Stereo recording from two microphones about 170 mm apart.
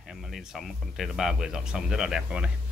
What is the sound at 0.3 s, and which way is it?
Speech, centre (ahead or behind).